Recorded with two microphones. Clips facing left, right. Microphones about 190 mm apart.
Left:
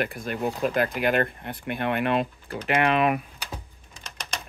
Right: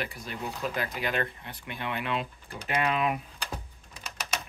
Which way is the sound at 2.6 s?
70° left (ahead or behind).